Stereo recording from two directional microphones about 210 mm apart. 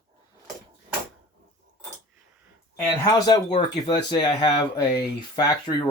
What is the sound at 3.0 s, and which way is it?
Speech, 15° left (ahead or behind).